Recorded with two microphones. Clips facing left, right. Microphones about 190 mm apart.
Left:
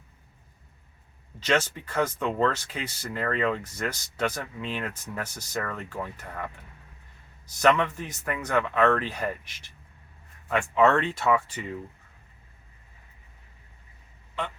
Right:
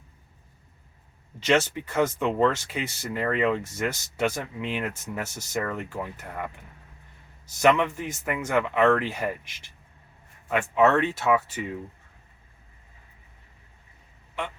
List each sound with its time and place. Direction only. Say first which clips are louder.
1.5 s speech: right 3 dB; 10° right (ahead or behind)
7.6 s speech: right 2 dB; 10° right (ahead or behind)
10.5 s speech: right 1 dB; 5° right (ahead or behind)